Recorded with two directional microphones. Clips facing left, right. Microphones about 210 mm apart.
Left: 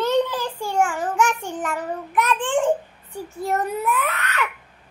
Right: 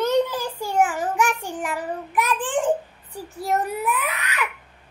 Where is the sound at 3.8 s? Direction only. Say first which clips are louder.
Left 2 dB; 15° right (ahead or behind).